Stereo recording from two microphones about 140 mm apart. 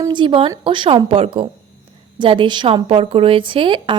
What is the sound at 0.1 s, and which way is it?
A woman's voice, 35° right (ahead or behind).